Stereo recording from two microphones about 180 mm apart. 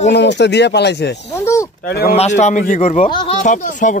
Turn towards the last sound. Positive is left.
turn(degrees=45)  # may be behind; listen again after turning